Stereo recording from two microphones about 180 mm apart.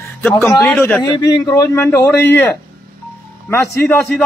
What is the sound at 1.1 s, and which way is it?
Speech, 20° left (ahead or behind).